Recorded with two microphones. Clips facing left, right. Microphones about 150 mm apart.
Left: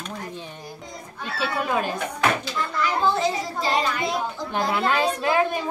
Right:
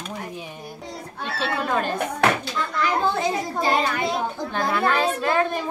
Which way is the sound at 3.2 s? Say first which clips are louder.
Right 1 dB; 55° right (ahead or behind).